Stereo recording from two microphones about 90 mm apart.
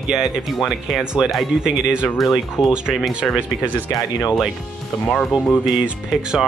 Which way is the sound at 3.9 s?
45° left (ahead or behind).